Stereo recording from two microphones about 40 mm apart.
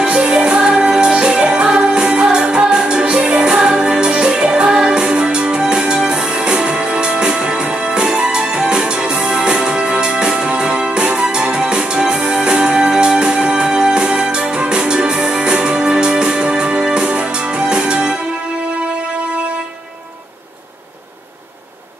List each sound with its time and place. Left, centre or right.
0.0 s music: centre